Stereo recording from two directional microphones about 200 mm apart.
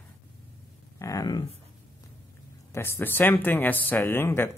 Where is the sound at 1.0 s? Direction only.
15° left (ahead or behind).